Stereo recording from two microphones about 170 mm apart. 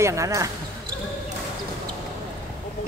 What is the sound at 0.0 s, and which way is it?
Speech, 20° right (ahead or behind).